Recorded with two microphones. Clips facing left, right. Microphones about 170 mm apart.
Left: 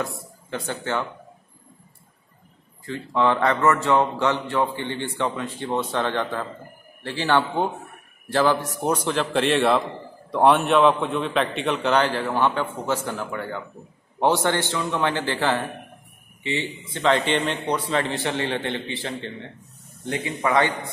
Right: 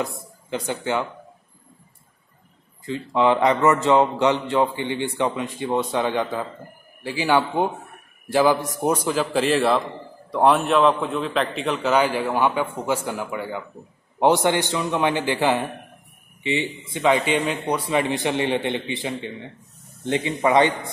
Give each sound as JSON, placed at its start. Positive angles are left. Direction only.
{"t": 0.0, "sound": "speech", "side_deg": -15}
{"t": 2.8, "sound": "a man's voice", "side_deg": -15}